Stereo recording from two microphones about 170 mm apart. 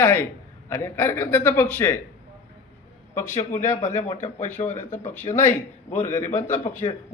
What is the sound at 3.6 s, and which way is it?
Speech, 45° left (ahead or behind).